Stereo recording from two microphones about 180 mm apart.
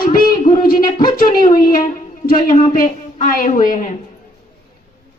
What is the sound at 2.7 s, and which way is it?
A woman's voice, 50° left (ahead or behind).